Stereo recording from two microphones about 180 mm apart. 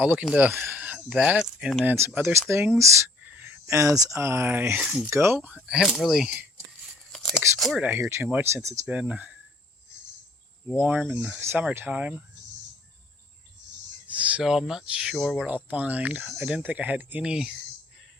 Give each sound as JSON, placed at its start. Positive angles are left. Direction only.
{"t": 0.0, "sound": "speech", "side_deg": -10}
{"t": 7.1, "sound": "a sound", "side_deg": 0}
{"t": 7.6, "sound": "speech", "side_deg": 0}
{"t": 10.8, "sound": "speech", "side_deg": -10}
{"t": 14.1, "sound": "speech", "side_deg": -5}